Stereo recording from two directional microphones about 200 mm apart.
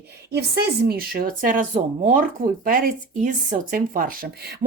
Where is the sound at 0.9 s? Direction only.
50° right (ahead or behind).